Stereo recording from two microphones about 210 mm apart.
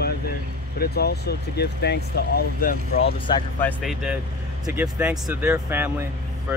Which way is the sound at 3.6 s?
Centre (ahead or behind).